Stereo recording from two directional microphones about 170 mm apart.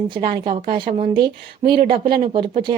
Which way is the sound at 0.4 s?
50° right (ahead or behind).